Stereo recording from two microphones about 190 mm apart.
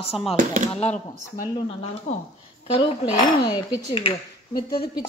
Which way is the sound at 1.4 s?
25° left (ahead or behind).